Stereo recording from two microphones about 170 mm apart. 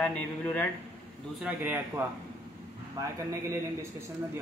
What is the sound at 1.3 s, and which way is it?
Speech, 10° right (ahead or behind).